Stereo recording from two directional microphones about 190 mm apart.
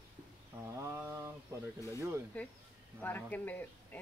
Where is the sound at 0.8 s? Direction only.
15° right (ahead or behind).